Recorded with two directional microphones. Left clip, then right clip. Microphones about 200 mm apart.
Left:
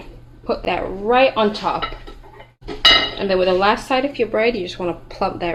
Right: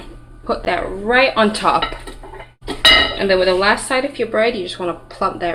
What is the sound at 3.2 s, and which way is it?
Speech, 10° left (ahead or behind).